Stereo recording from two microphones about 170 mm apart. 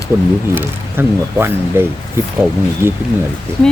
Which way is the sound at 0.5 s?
15° right (ahead or behind).